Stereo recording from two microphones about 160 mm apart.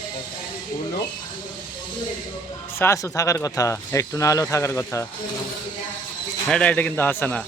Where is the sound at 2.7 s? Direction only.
15° left (ahead or behind).